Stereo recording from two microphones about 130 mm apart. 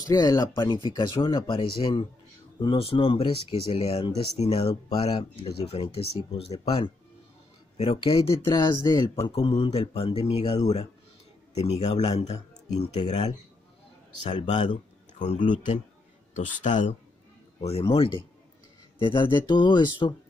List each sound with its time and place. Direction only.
0.0 s speech: 30° left (ahead or behind); by 8.2 s 45° left (ahead or behind)
8.5 s speech: 35° left (ahead or behind)
9.3 s speech: 45° left (ahead or behind)
14.4 s speech: 40° left (ahead or behind)
15.1 s speech: 75° left (ahead or behind)
17.6 s speech: 50° left (ahead or behind)